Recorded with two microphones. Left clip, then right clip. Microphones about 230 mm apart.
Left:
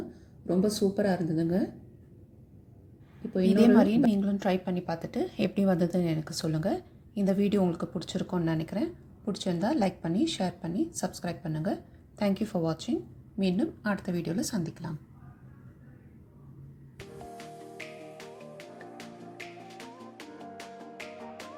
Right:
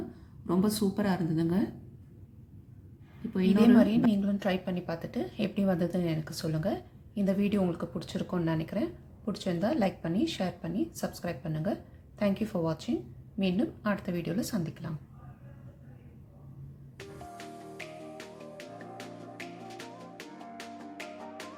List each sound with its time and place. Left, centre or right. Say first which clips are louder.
0.4 s a woman's voice: left 3 dB; centre
3.6 s a woman's voice: left 1 dB; left
17.0 s music: even; centre